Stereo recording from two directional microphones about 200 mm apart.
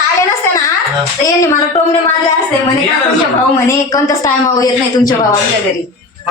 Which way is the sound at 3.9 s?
15° left (ahead or behind).